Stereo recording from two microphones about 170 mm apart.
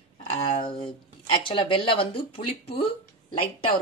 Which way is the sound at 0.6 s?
30° left (ahead or behind).